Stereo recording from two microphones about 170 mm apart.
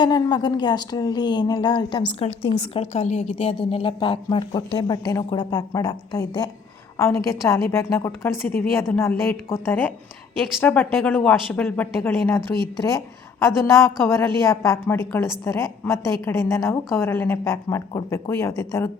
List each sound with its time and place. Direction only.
0.0 s a woman's voice: 25° left (ahead or behind)
14.0 s a woman's voice: 15° left (ahead or behind)